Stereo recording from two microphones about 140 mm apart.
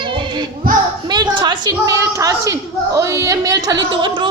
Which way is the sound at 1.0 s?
30° right (ahead or behind).